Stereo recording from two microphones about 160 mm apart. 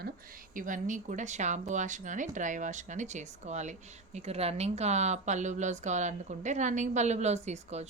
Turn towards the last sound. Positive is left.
turn(degrees=-45)  # may be behind; listen again after turning